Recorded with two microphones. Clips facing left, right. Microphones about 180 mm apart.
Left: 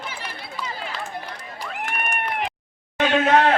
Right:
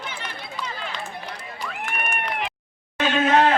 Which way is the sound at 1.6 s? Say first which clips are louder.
Left 1 dB; 40° left (ahead or behind).